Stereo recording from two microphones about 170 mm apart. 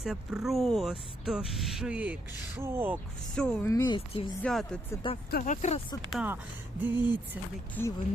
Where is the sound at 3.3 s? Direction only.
5° left (ahead or behind).